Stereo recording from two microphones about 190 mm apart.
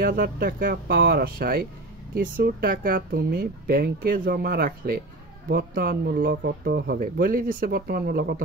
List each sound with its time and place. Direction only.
0.0 s speech: 60° right (ahead or behind)